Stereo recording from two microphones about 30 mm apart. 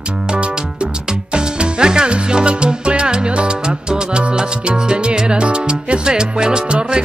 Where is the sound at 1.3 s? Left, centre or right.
Right.